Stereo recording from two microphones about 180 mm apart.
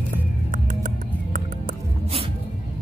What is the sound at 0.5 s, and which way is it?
Music, 45° right (ahead or behind).